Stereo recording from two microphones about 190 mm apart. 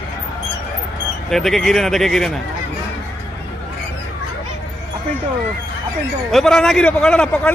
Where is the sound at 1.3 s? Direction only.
Centre (ahead or behind).